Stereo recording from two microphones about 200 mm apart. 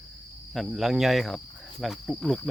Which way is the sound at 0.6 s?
Centre (ahead or behind).